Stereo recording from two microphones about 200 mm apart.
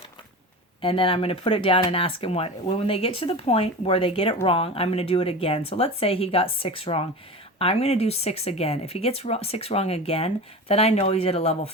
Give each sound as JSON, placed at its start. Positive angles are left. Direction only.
{"t": 0.8, "sound": "speech", "side_deg": 25}